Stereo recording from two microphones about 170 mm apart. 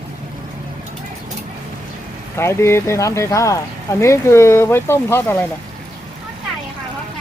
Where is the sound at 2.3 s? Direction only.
15° left (ahead or behind).